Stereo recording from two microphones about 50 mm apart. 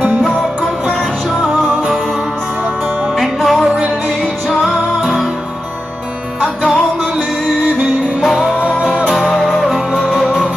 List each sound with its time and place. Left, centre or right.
3.2 s music: centre
9.1 s music: centre
10.2 s music: centre